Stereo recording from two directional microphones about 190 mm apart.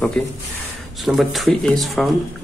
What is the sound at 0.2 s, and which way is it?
Speech, 5° left (ahead or behind).